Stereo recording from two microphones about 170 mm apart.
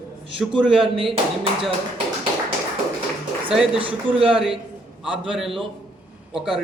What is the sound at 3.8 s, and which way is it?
Speech, 30° right (ahead or behind).